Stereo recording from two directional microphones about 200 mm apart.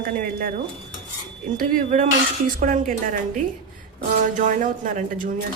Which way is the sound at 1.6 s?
40° right (ahead or behind).